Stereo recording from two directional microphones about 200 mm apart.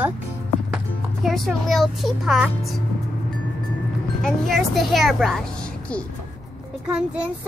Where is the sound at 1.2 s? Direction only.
Centre (ahead or behind).